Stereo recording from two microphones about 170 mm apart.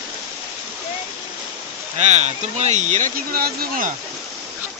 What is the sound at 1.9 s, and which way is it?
Speech, 40° right (ahead or behind).